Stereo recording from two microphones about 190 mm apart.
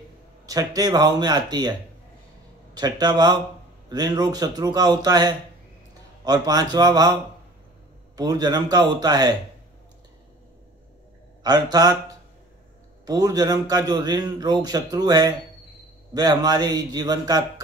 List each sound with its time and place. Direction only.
0.5 s a man's voice: 20° right (ahead or behind)
8.2 s a man's voice: 20° right (ahead or behind)
11.4 s a man's voice: 20° right (ahead or behind)
13.0 s a man's voice: 20° right (ahead or behind)